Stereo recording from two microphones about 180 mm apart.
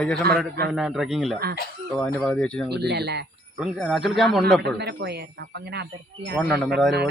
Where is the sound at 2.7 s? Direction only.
65° right (ahead or behind).